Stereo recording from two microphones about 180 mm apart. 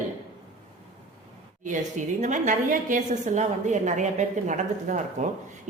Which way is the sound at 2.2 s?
40° right (ahead or behind).